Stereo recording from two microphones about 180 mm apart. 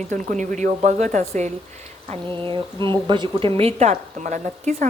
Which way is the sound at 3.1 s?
30° right (ahead or behind).